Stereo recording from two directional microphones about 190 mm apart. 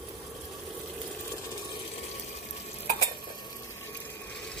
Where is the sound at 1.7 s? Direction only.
30° left (ahead or behind).